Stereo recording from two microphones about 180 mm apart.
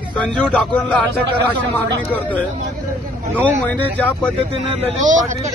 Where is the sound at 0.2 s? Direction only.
5° left (ahead or behind).